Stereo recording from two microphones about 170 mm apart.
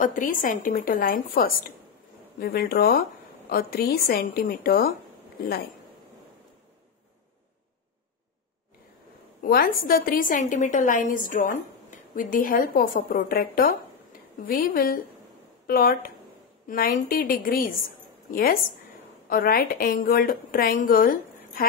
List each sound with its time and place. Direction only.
0.0 s a woman's voice: 55° left (ahead or behind)
9.4 s a woman's voice: 60° left (ahead or behind)